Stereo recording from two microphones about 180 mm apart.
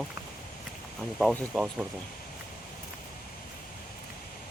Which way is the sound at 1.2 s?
Centre (ahead or behind).